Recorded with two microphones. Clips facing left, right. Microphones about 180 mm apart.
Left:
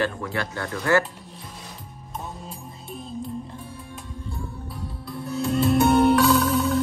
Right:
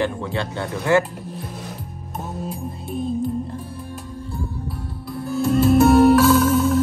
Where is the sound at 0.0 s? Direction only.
25° right (ahead or behind).